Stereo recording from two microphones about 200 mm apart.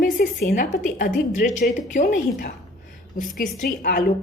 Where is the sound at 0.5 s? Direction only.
40° left (ahead or behind).